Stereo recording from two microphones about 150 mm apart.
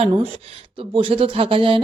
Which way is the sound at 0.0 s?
40° right (ahead or behind).